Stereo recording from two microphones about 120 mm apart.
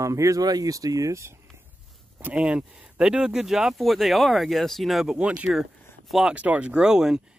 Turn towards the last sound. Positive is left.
turn(degrees=-5)  # may be behind; listen again after turning